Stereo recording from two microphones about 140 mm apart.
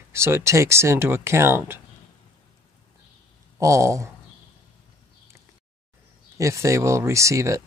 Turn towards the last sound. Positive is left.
turn(degrees=-20)  # may be behind; listen again after turning